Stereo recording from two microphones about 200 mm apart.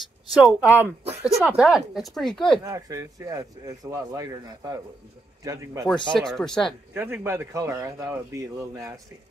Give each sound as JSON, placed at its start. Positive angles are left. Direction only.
{"t": 0.3, "sound": "a woman's voice", "side_deg": -5}
{"t": 2.6, "sound": "speech", "side_deg": -15}
{"t": 6.1, "sound": "a woman's voice", "side_deg": 0}
{"t": 6.9, "sound": "speech", "side_deg": -10}